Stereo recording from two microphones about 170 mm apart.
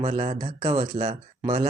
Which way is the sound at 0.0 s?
35° right (ahead or behind).